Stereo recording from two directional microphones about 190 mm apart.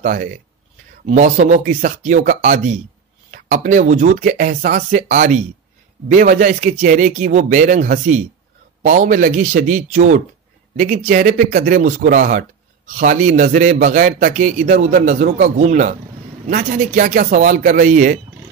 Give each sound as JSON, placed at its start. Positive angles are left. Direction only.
{"t": 0.0, "sound": "a man's voice", "side_deg": -40}